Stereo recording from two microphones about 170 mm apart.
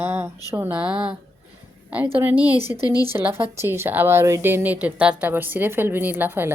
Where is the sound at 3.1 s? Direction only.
10° right (ahead or behind).